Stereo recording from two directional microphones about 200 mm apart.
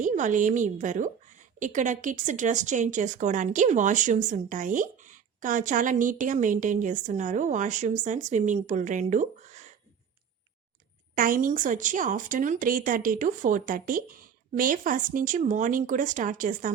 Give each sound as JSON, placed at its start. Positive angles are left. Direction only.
{"t": 0.0, "sound": "a woman's voice", "side_deg": -40}
{"t": 11.1, "sound": "a woman's voice", "side_deg": -45}